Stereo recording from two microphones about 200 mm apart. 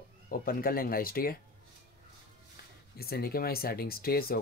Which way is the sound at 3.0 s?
50° left (ahead or behind).